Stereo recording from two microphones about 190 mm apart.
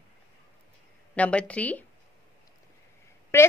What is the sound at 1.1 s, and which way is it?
Speech, 5° left (ahead or behind).